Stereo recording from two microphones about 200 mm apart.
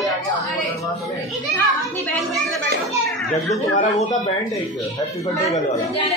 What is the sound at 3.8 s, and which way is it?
Speech, 40° left (ahead or behind).